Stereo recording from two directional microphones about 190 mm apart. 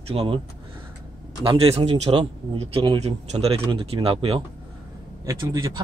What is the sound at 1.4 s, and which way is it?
A man's voice, 25° right (ahead or behind).